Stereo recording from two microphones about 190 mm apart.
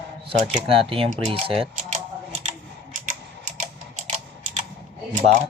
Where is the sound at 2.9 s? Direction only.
40° right (ahead or behind).